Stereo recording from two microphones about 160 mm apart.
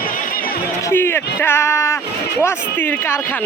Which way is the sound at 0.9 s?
15° left (ahead or behind).